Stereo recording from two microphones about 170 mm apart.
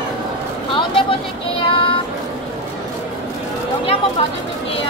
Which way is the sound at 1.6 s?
30° left (ahead or behind).